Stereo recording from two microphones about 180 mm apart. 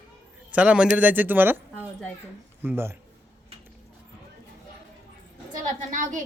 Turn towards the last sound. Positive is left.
turn(degrees=-45)  # may be behind; listen again after turning